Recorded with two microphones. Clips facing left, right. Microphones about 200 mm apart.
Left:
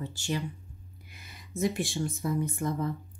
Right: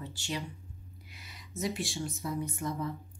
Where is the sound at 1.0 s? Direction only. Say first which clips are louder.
Left 3 dB; 50° left (ahead or behind).